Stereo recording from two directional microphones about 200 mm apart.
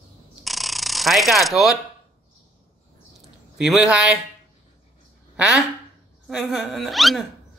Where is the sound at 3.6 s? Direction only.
5° right (ahead or behind).